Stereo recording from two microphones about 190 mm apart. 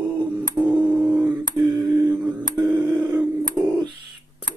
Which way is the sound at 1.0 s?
10° right (ahead or behind).